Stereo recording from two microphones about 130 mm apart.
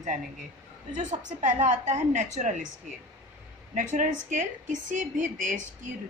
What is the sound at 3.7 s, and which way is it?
A woman's voice, 75° right (ahead or behind).